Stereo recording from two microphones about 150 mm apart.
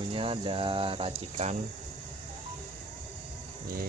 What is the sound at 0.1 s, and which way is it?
Speech, 40° right (ahead or behind).